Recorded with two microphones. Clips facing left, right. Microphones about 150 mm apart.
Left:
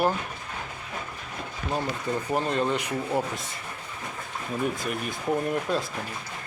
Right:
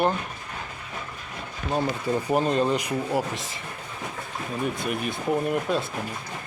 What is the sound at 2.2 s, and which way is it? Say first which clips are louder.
Speech: right 3 dB; 15° right (ahead or behind).